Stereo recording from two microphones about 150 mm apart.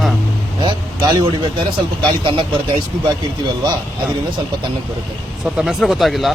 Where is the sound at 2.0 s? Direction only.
35° right (ahead or behind).